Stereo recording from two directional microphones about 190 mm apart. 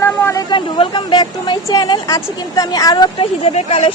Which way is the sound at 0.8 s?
25° left (ahead or behind).